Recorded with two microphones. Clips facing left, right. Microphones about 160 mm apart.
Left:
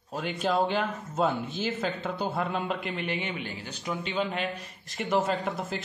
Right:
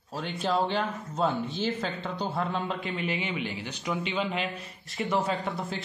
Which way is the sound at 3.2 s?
45° left (ahead or behind).